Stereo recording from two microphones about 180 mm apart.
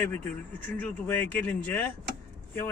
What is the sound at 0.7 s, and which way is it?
Speech, 10° left (ahead or behind).